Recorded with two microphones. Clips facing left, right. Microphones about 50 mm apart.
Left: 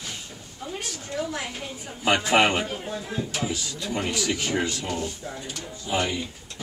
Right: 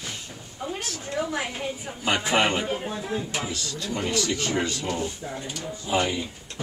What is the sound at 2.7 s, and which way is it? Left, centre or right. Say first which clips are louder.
Speech: right 3 dB; centre.